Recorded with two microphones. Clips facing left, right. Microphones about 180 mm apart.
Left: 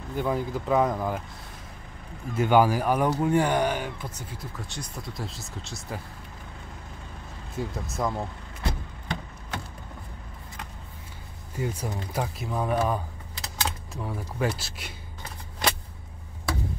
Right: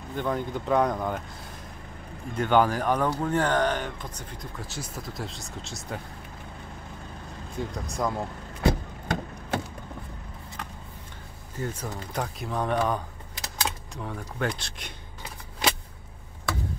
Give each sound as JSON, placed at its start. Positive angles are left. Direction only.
{"t": 0.1, "sound": "speech", "side_deg": 5}
{"t": 2.3, "sound": "speech", "side_deg": 10}
{"t": 7.5, "sound": "speech", "side_deg": 5}
{"t": 8.6, "sound": "a sound", "side_deg": -50}
{"t": 11.5, "sound": "speech", "side_deg": 10}